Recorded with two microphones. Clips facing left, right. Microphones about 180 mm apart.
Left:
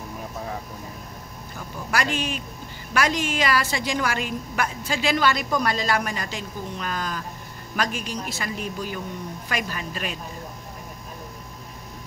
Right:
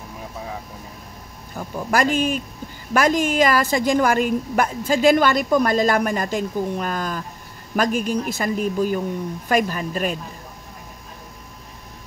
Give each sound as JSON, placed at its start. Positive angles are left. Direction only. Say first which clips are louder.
{"t": 1.9, "sound": "a woman's voice", "louder": "right 7 dB", "side_deg": -45}